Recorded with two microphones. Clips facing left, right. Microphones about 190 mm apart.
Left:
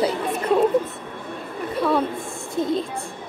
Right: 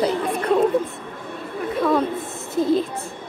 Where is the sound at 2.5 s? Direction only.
Centre (ahead or behind).